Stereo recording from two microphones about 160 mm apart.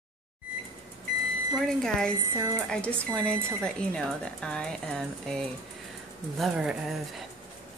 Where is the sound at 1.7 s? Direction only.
5° left (ahead or behind).